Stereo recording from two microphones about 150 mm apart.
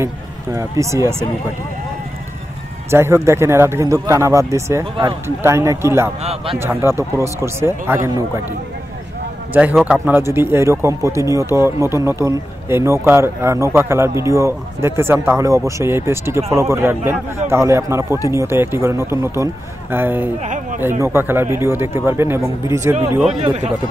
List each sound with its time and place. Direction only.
0.0 s speech: 20° right (ahead or behind)
2.9 s speech: 20° right (ahead or behind)
6.2 s a man's voice: 40° right (ahead or behind)
6.6 s speech: 15° right (ahead or behind)
9.5 s speech: 10° right (ahead or behind)
20.4 s a sound: 55° right (ahead or behind)
21.0 s speech: 15° right (ahead or behind)